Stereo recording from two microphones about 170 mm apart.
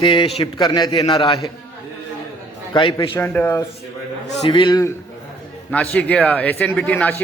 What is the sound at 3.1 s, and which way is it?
Speech, 15° left (ahead or behind).